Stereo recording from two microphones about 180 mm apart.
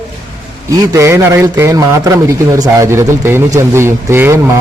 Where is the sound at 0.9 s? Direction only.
15° right (ahead or behind).